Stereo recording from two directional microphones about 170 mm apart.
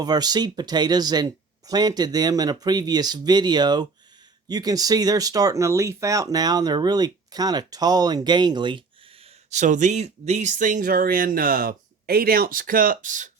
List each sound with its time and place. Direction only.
0.0 s speech: 25° right (ahead or behind)
9.5 s speech: 45° right (ahead or behind)